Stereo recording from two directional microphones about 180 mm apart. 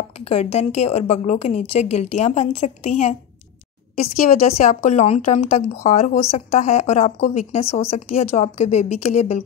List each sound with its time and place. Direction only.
0.2 s speech: 35° left (ahead or behind)
4.2 s speech: 40° left (ahead or behind)